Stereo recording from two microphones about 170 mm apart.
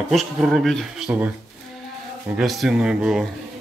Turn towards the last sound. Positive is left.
turn(degrees=-5)  # may be behind; listen again after turning